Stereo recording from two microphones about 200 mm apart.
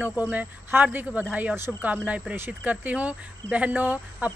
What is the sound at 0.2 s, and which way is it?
Speech, 10° right (ahead or behind).